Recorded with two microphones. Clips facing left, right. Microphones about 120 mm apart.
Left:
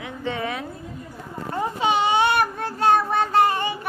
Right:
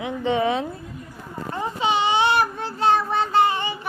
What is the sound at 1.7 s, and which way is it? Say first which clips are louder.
Child singing: even; 50° left (ahead or behind).